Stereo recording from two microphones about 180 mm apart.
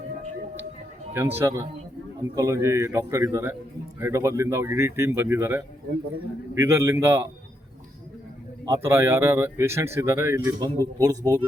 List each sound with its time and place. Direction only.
1.1 s speech: 10° right (ahead or behind)
8.7 s speech: 15° right (ahead or behind)